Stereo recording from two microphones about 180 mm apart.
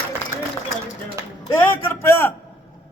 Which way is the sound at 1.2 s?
15° right (ahead or behind).